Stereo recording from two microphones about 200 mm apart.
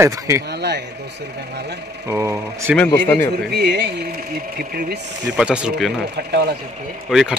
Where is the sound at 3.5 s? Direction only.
55° right (ahead or behind).